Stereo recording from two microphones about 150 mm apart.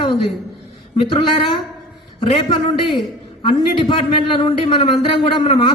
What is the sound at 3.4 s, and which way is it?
Speech, 35° left (ahead or behind).